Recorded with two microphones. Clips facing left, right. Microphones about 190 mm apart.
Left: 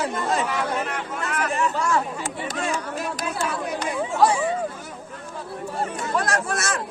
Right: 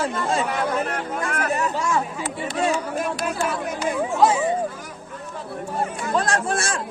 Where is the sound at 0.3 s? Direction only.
35° right (ahead or behind).